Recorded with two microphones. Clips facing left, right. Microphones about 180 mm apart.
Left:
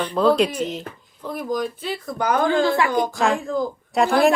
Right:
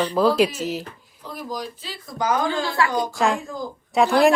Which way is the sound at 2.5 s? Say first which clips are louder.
Left 4 dB; 20° left (ahead or behind).